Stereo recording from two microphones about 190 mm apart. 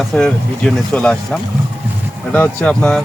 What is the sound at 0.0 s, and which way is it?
Speech, centre (ahead or behind).